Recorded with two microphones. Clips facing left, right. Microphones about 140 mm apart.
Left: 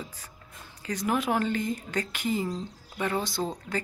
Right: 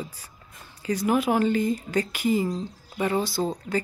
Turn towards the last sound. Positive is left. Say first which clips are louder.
# right 5 dB
turn(degrees=-5)  # may be behind; listen again after turning